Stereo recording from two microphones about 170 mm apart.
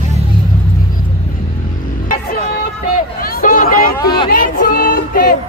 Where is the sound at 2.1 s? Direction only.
55° left (ahead or behind).